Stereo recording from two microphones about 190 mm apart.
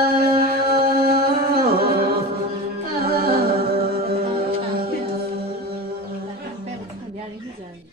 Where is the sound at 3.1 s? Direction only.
50° right (ahead or behind).